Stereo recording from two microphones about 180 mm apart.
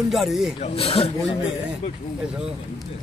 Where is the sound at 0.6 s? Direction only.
35° left (ahead or behind).